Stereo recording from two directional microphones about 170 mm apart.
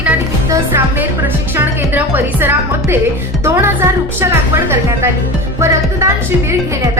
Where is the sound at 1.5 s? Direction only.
10° right (ahead or behind).